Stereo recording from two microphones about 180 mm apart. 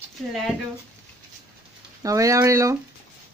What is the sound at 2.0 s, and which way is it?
Speech, 20° right (ahead or behind).